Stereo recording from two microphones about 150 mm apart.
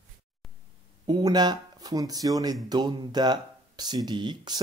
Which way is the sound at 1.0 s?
30° right (ahead or behind).